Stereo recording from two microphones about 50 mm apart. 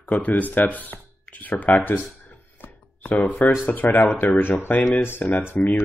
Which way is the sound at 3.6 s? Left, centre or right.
Left.